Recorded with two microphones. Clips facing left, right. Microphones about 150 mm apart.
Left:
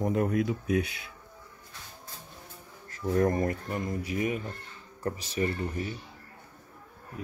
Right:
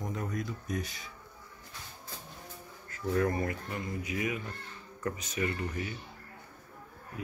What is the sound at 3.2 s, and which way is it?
Speech, 40° left (ahead or behind).